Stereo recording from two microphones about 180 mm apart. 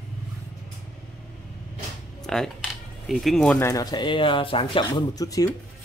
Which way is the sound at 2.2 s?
Centre (ahead or behind).